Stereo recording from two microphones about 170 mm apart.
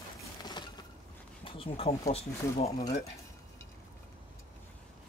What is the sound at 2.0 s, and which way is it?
Speech, 40° left (ahead or behind).